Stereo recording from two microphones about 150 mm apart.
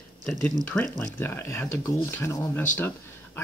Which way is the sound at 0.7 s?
10° left (ahead or behind).